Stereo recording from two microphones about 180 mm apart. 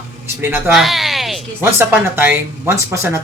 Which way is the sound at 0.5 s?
Centre (ahead or behind).